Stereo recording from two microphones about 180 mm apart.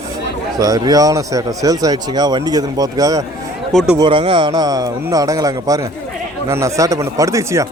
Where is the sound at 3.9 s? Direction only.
25° right (ahead or behind).